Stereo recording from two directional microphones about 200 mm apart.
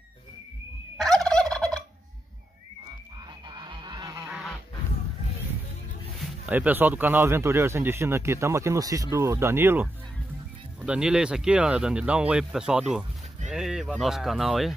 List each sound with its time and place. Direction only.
0.9 s fowl: centre (ahead or behind)
3.4 s goose: 20° right (ahead or behind)
4.3 s goose: centre (ahead or behind)
6.2 s speech: 5° right (ahead or behind)